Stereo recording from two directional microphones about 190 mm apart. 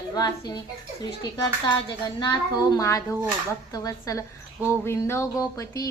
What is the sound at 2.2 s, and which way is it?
Speech, 20° left (ahead or behind).